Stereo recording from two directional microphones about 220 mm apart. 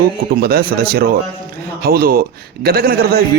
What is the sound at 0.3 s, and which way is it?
A man's voice, 45° right (ahead or behind).